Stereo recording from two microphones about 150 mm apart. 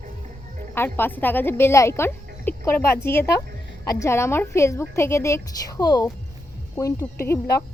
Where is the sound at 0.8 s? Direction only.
15° left (ahead or behind).